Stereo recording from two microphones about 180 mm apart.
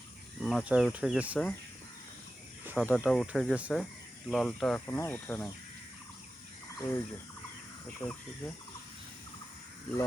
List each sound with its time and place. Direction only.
0.3 s speech: centre (ahead or behind)
2.7 s speech: 5° right (ahead or behind)
6.7 s speech: 15° left (ahead or behind)